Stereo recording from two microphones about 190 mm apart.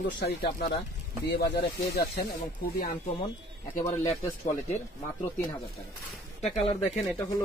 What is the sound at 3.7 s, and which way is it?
Speech, 40° left (ahead or behind).